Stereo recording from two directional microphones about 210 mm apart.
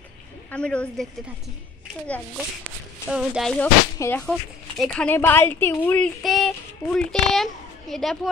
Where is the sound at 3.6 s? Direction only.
10° left (ahead or behind).